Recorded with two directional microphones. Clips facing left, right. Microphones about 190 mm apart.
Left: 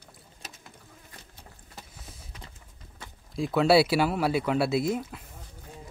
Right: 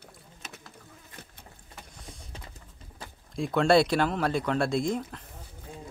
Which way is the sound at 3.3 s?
5° left (ahead or behind).